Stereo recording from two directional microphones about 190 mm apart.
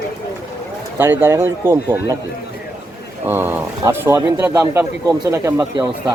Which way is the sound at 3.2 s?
10° right (ahead or behind).